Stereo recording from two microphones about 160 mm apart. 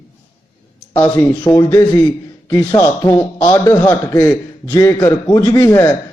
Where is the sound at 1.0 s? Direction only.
10° left (ahead or behind).